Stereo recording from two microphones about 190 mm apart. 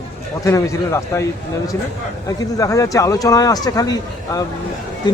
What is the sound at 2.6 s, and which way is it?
Speech, 15° left (ahead or behind).